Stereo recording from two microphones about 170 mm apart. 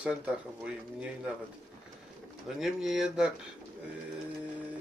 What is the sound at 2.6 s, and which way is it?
Speech, centre (ahead or behind).